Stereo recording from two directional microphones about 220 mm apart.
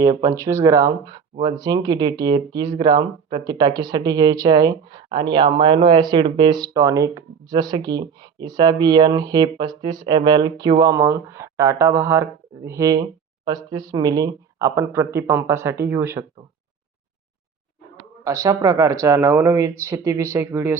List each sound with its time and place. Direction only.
0.0 s speech: 15° right (ahead or behind)
18.2 s speech: 15° right (ahead or behind)